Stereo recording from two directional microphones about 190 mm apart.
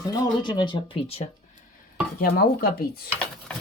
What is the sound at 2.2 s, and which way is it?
Speech, 55° left (ahead or behind).